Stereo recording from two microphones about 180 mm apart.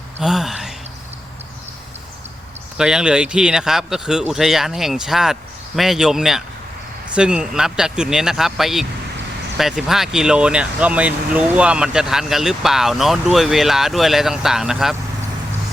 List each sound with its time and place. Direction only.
0.2 s speech: centre (ahead or behind)
2.7 s speech: 5° right (ahead or behind)